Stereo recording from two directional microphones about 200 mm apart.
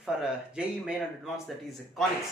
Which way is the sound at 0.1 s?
5° right (ahead or behind).